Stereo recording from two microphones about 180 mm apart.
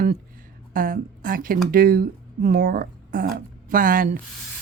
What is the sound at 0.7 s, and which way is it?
A woman's voice, 50° right (ahead or behind).